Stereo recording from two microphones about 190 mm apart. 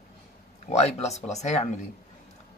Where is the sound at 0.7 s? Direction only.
35° left (ahead or behind).